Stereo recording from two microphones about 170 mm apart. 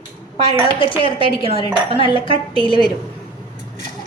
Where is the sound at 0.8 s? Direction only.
30° left (ahead or behind).